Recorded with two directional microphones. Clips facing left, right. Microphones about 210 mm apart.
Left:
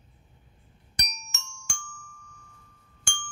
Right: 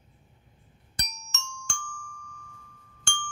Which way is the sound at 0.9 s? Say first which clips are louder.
Even; 15° left (ahead or behind).